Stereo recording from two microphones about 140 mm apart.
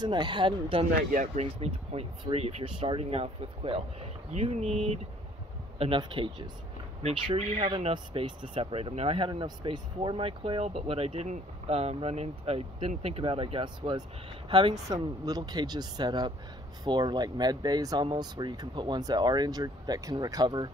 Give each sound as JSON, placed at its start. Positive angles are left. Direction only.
{"t": 0.0, "sound": "speech", "side_deg": -35}
{"t": 1.1, "sound": "speech", "side_deg": -70}
{"t": 1.4, "sound": "speech", "side_deg": -50}
{"t": 7.0, "sound": "speech", "side_deg": -50}